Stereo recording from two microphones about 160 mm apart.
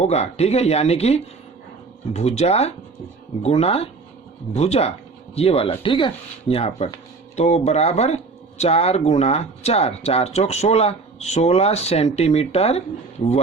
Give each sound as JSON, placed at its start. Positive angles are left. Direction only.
{"t": 0.0, "sound": "speech", "side_deg": 40}